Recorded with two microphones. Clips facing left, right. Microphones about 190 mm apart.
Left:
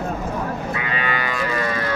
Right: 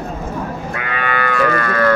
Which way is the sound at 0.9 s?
55° right (ahead or behind).